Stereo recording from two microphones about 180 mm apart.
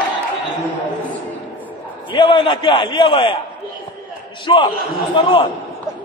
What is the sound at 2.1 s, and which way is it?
Speech, 25° left (ahead or behind).